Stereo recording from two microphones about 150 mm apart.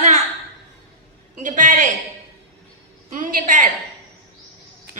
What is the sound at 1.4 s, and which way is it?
Speech, 60° right (ahead or behind).